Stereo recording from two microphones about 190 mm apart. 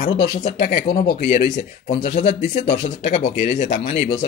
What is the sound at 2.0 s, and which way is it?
Speech, 40° left (ahead or behind).